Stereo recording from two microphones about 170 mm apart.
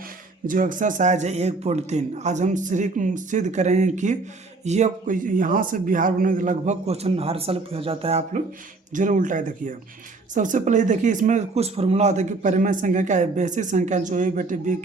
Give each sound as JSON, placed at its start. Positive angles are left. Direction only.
{"t": 0.4, "sound": "speech", "side_deg": -55}
{"t": 8.9, "sound": "speech", "side_deg": -50}